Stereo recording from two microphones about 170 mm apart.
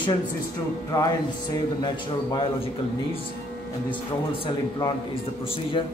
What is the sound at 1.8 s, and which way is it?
Speech, 30° left (ahead or behind).